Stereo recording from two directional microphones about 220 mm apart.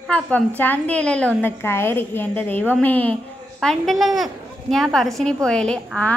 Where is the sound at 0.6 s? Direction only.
5° left (ahead or behind).